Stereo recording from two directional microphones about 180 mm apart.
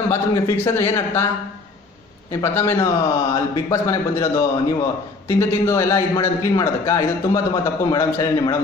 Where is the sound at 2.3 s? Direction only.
15° left (ahead or behind).